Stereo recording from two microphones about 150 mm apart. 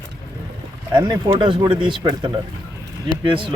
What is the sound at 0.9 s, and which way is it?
Speech, 25° right (ahead or behind).